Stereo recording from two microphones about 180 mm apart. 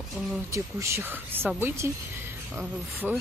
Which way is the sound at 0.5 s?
15° right (ahead or behind).